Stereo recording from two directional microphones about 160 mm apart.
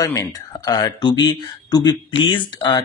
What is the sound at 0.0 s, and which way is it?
Speech, 20° left (ahead or behind).